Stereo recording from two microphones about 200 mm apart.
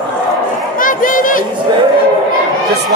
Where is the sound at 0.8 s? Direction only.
40° left (ahead or behind).